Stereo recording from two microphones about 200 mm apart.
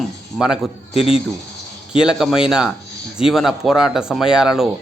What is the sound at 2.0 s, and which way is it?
A man's voice, 5° right (ahead or behind).